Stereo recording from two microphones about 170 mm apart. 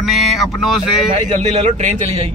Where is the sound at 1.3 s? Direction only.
40° right (ahead or behind).